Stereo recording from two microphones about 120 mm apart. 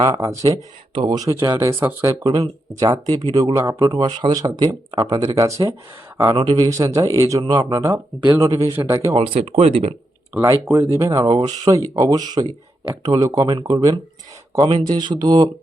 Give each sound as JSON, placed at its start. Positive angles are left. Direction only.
{"t": 0.0, "sound": "speech", "side_deg": -30}
{"t": 6.3, "sound": "speech", "side_deg": -45}
{"t": 6.6, "sound": "speech", "side_deg": -30}
{"t": 9.1, "sound": "speech", "side_deg": -55}
{"t": 10.4, "sound": "speech", "side_deg": -25}
{"t": 11.2, "sound": "speech", "side_deg": -50}
{"t": 11.4, "sound": "speech", "side_deg": -35}